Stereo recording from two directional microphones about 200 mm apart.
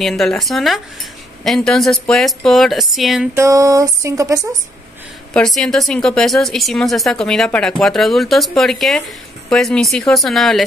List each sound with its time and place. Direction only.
0.0 s speech: centre (ahead or behind)
3.3 s a sound: 15° right (ahead or behind)
5.3 s speech: 5° left (ahead or behind)